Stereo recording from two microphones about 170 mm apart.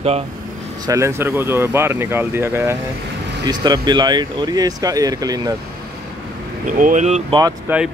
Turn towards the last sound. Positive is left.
turn(degrees=-15)  # may be behind; listen again after turning